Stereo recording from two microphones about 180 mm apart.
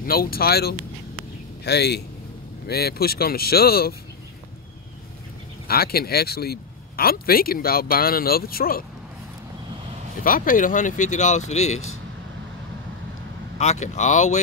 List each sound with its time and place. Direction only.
0.0 s a man's voice: 55° left (ahead or behind)
5.7 s a man's voice: 60° left (ahead or behind)
10.2 s speech: 50° left (ahead or behind)
13.6 s speech: 40° left (ahead or behind)